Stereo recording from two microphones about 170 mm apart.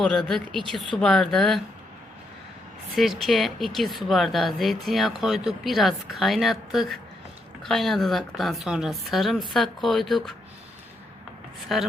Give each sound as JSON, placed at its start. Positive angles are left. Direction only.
{"t": 0.0, "sound": "speech", "side_deg": 0}
{"t": 2.9, "sound": "speech", "side_deg": 0}
{"t": 11.7, "sound": "speech", "side_deg": 0}